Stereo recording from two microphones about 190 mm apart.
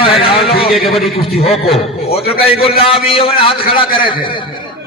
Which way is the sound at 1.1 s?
30° left (ahead or behind).